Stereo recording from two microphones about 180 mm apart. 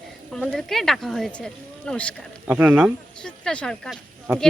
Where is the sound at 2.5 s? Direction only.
10° right (ahead or behind).